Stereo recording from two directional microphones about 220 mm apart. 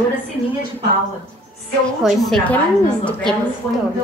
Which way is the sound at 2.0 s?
Centre (ahead or behind).